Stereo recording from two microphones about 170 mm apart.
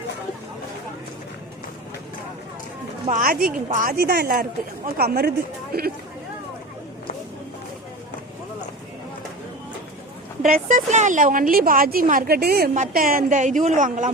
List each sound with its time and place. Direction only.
3.1 s speech: 55° right (ahead or behind)
10.4 s a woman's voice: 50° right (ahead or behind)